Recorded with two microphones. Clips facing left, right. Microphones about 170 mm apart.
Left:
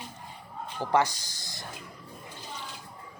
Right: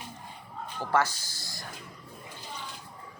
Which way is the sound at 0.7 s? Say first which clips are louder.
Left 2 dB; 15° left (ahead or behind).